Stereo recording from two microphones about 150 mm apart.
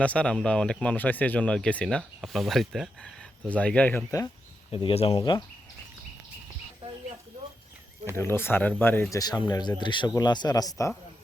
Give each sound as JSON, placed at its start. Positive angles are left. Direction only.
{"t": 0.0, "sound": "speech", "side_deg": 10}
{"t": 4.7, "sound": "speech", "side_deg": 40}
{"t": 6.8, "sound": "snake", "side_deg": -35}
{"t": 8.1, "sound": "speech", "side_deg": 15}
{"t": 9.1, "sound": "speech", "side_deg": 25}